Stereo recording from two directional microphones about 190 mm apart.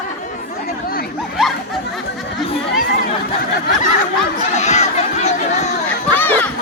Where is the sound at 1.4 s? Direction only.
Centre (ahead or behind).